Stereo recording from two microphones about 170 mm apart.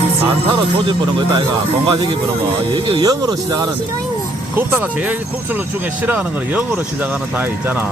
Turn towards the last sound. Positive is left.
turn(degrees=-10)  # may be behind; listen again after turning